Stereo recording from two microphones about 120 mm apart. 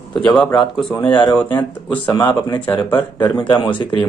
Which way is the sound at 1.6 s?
35° left (ahead or behind).